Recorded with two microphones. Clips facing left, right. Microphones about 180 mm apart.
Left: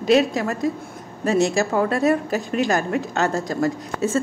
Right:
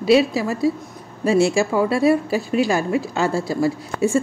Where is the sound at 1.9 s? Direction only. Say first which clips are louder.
Right 2 dB; 45° left (ahead or behind).